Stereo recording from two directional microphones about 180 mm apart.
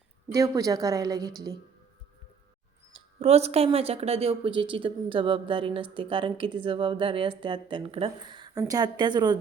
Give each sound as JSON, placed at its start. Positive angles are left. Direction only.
{"t": 0.3, "sound": "speech", "side_deg": -20}
{"t": 2.9, "sound": "speech", "side_deg": -35}